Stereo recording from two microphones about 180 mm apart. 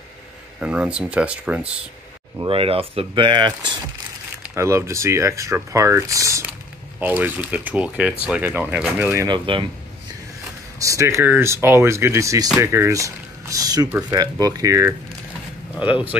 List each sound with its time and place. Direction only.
0.6 s speech: 5° right (ahead or behind)
2.3 s speech: 30° right (ahead or behind)
4.4 s speech: 15° right (ahead or behind)
9.3 s speech: 25° right (ahead or behind)
10.8 s speech: 15° right (ahead or behind)